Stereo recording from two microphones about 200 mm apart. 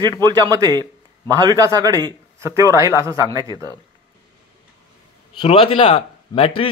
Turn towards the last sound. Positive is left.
turn(degrees=30)  # may be behind; listen again after turning